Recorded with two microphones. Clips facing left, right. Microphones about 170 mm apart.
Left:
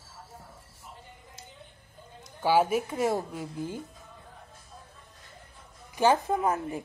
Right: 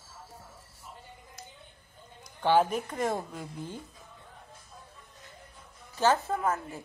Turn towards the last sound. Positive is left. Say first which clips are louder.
# left 3 dB
turn(degrees=15)  # may be behind; listen again after turning